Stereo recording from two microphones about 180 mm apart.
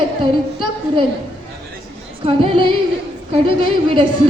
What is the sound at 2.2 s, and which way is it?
Speech, 30° right (ahead or behind).